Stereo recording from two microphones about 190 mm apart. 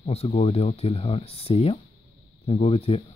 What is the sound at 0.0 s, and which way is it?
Speech, 35° left (ahead or behind).